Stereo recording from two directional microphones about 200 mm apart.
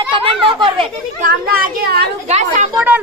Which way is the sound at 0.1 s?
25° right (ahead or behind).